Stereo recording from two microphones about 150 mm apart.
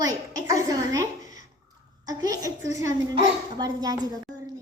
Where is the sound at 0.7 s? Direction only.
25° right (ahead or behind).